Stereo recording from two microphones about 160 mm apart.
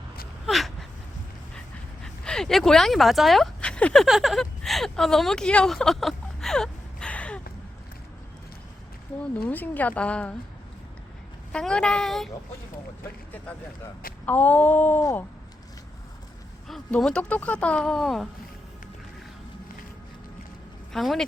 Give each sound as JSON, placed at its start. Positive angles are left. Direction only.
{"t": 0.4, "sound": "a sound", "side_deg": 0}
{"t": 2.2, "sound": "speech", "side_deg": 5}
{"t": 9.3, "sound": "a woman's voice", "side_deg": 10}
{"t": 11.5, "sound": "speech", "side_deg": 5}
{"t": 14.3, "sound": "a woman's voice", "side_deg": 10}
{"t": 16.6, "sound": "speech", "side_deg": 0}
{"t": 20.9, "sound": "speech", "side_deg": 0}